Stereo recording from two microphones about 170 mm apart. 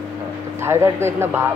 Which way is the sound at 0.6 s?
15° right (ahead or behind).